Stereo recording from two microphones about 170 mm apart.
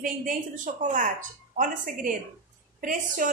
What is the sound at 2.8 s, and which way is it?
Speech, 50° right (ahead or behind).